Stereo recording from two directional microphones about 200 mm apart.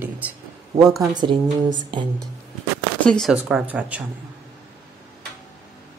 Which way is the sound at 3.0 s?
5° left (ahead or behind).